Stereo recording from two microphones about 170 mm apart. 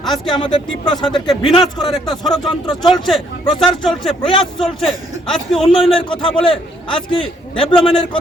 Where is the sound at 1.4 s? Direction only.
30° left (ahead or behind).